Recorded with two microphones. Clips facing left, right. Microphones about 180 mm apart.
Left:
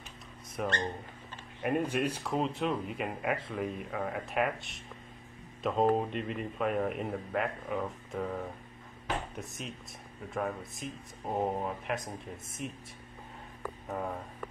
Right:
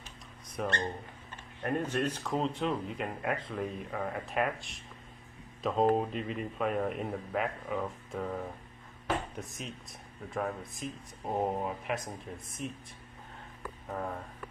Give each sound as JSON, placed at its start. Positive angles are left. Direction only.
{"t": 0.6, "sound": "speech", "side_deg": 5}
{"t": 13.8, "sound": "speech", "side_deg": 5}